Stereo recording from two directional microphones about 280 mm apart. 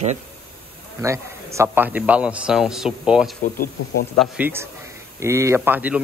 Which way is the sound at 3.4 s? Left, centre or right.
Left.